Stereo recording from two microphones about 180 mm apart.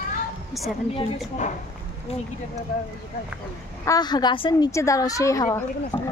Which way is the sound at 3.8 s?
20° left (ahead or behind).